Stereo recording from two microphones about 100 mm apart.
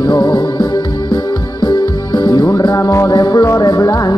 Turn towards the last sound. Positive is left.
turn(degrees=35)  # may be behind; listen again after turning